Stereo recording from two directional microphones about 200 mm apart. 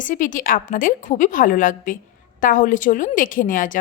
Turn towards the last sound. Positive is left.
turn(degrees=40)  # may be behind; listen again after turning